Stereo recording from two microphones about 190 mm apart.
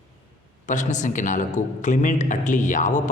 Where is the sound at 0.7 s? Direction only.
40° left (ahead or behind).